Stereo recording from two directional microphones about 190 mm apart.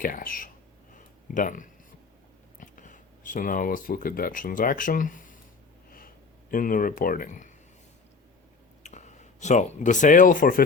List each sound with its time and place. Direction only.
0.0 s speech: 45° left (ahead or behind)
0.9 s a sound: 45° left (ahead or behind)
2.6 s speech: 40° left (ahead or behind)
6.5 s speech: 45° left (ahead or behind)
8.8 s speech: 40° left (ahead or behind)